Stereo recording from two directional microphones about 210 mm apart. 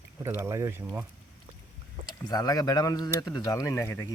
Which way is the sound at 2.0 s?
20° left (ahead or behind).